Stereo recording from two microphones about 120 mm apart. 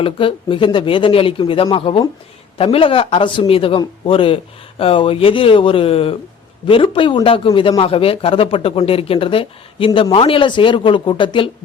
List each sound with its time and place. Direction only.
0.0 s speech: 50° left (ahead or behind)